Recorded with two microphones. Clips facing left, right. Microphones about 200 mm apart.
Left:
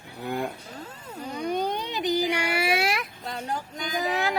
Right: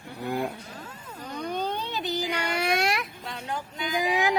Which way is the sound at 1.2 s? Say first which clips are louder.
Left 3 dB; 10° left (ahead or behind).